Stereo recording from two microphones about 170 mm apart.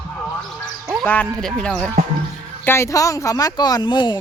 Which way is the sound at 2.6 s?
15° left (ahead or behind).